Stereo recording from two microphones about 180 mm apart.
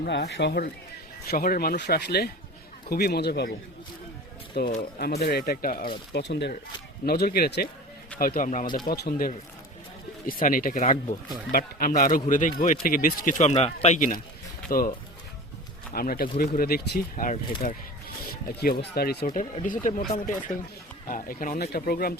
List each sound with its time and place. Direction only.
0.0 s speech: 70° left (ahead or behind)
4.6 s speech: 65° left (ahead or behind)
6.1 s speech: 70° left (ahead or behind)
7.0 s speech: 55° left (ahead or behind)
14.7 s speech: 55° left (ahead or behind)
18.2 s speech: 55° left (ahead or behind)